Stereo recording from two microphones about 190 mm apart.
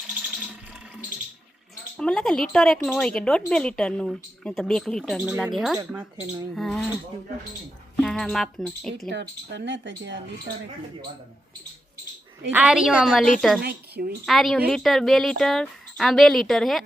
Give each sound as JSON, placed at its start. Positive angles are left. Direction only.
{"t": 2.0, "sound": "speech", "side_deg": 5}
{"t": 6.1, "sound": "speech", "side_deg": -15}
{"t": 6.5, "sound": "speech", "side_deg": 0}
{"t": 7.9, "sound": "speech", "side_deg": 0}
{"t": 9.5, "sound": "speech", "side_deg": -65}
{"t": 12.5, "sound": "speech", "side_deg": -5}
{"t": 13.6, "sound": "speech", "side_deg": -55}
{"t": 14.3, "sound": "speech", "side_deg": 0}